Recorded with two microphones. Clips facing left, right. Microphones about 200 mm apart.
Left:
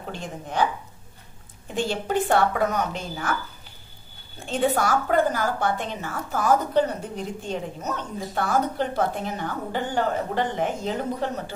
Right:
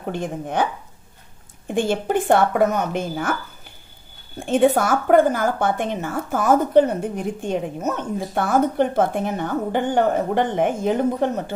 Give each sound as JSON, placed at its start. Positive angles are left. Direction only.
{"t": 0.0, "sound": "a woman's voice", "side_deg": -55}
{"t": 1.7, "sound": "a woman's voice", "side_deg": -50}
{"t": 4.5, "sound": "a woman's voice", "side_deg": -50}